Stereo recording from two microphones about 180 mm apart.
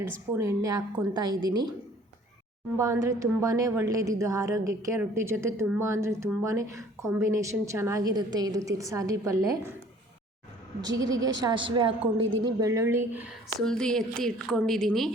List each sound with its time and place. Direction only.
0.3 s a woman's voice: 15° right (ahead or behind)
2.7 s speech: 15° right (ahead or behind)
10.8 s a woman's voice: 20° right (ahead or behind)
13.6 s a woman's voice: 5° left (ahead or behind)